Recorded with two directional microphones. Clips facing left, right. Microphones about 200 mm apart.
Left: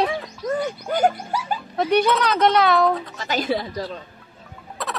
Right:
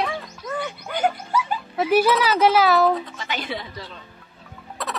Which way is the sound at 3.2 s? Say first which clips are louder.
Left 6 dB; 40° left (ahead or behind).